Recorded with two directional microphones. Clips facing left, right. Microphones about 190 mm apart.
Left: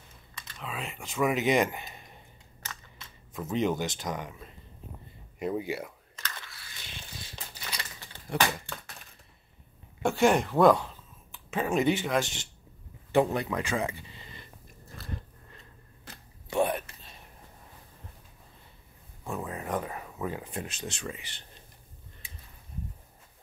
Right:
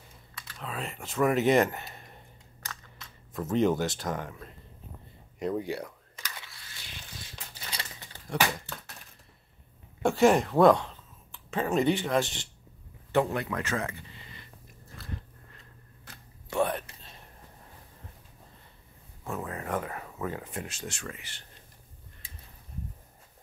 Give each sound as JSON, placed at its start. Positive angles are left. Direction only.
{"t": 0.3, "sound": "computer keyboard", "side_deg": -5}
{"t": 0.7, "sound": "speech", "side_deg": 0}
{"t": 1.8, "sound": "speech", "side_deg": 15}
{"t": 2.6, "sound": "camera", "side_deg": 5}
{"t": 5.4, "sound": "speech", "side_deg": 5}
{"t": 6.1, "sound": "a sound", "side_deg": -10}
{"t": 8.3, "sound": "a sound", "side_deg": 0}
{"t": 10.0, "sound": "speech", "side_deg": 0}
{"t": 13.1, "sound": "speech", "side_deg": 15}
{"t": 16.1, "sound": "a sound", "side_deg": 15}
{"t": 19.2, "sound": "a sound", "side_deg": 15}
{"t": 20.6, "sound": "speech", "side_deg": 20}